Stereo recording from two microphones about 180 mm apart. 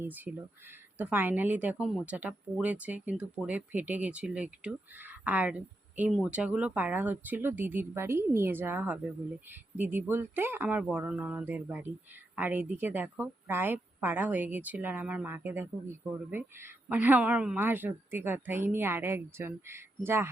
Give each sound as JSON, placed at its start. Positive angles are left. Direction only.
{"t": 0.0, "sound": "speech", "side_deg": -10}